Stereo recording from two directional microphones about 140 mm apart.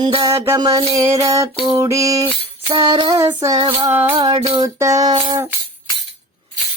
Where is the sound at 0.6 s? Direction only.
30° right (ahead or behind).